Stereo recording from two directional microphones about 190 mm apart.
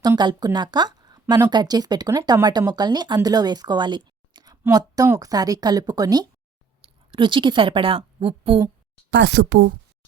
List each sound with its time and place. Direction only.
0.0 s a woman's voice: 20° right (ahead or behind)
9.0 s speech: 65° right (ahead or behind)